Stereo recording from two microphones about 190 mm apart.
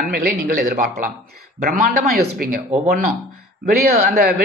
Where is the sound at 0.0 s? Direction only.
50° right (ahead or behind).